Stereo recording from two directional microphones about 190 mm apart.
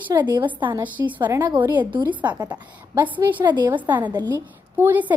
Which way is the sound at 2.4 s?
20° right (ahead or behind).